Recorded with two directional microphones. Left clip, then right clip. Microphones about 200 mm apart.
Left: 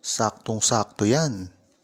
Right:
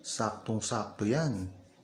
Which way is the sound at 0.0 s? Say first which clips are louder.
Left 9 dB; 40° left (ahead or behind).